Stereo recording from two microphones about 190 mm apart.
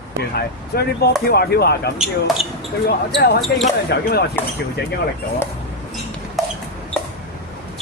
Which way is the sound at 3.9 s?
60° left (ahead or behind).